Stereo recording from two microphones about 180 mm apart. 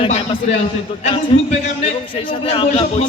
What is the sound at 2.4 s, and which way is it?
Speech, 30° left (ahead or behind).